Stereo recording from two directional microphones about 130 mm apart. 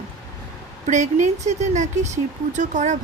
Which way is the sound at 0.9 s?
65° right (ahead or behind).